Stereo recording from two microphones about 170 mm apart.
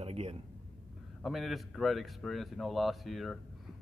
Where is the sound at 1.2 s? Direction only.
Centre (ahead or behind).